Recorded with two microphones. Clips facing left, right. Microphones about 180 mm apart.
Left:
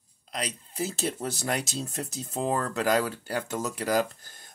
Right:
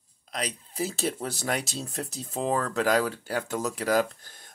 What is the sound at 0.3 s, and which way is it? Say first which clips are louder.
Speech: right 1 dB; centre (ahead or behind).